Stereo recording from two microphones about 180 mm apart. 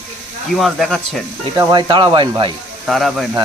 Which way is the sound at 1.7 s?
25° right (ahead or behind).